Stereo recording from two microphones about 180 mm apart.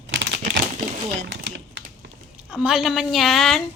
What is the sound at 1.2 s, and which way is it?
Typing, 80° right.